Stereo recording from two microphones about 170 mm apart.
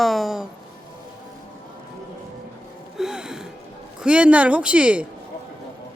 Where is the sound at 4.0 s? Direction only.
5° right (ahead or behind).